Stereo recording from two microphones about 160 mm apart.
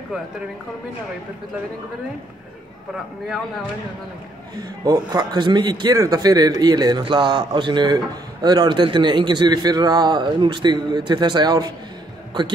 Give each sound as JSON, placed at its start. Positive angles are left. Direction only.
{"t": 4.6, "sound": "a man's voice", "side_deg": -25}